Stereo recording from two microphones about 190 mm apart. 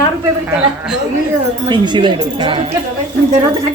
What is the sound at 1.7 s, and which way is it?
Speech, 25° right (ahead or behind).